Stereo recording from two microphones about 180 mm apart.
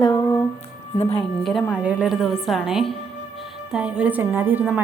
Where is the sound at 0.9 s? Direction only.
35° left (ahead or behind).